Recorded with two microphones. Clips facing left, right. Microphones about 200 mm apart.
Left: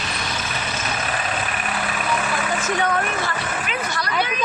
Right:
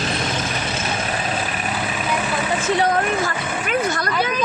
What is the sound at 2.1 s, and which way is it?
Speech, 30° right (ahead or behind).